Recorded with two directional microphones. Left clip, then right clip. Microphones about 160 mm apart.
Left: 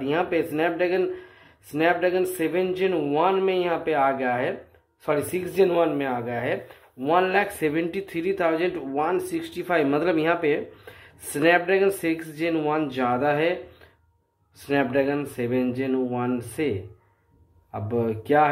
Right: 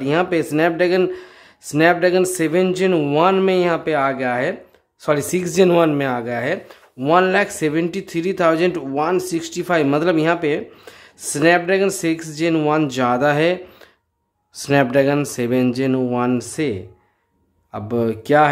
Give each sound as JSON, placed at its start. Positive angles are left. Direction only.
{"t": 0.0, "sound": "speech", "side_deg": -35}
{"t": 14.7, "sound": "speech", "side_deg": -45}